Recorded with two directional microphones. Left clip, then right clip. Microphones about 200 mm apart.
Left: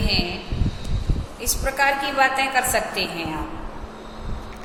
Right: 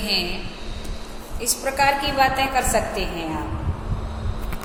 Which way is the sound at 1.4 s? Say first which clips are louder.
Right 1 dB; 10° right (ahead or behind).